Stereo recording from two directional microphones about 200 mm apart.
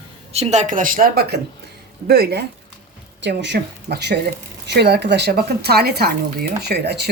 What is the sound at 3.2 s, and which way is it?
A woman's voice, 60° right (ahead or behind).